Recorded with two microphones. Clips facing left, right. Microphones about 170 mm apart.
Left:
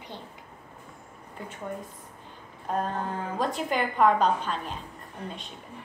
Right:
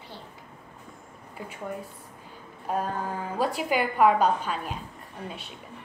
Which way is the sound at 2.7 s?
10° right (ahead or behind).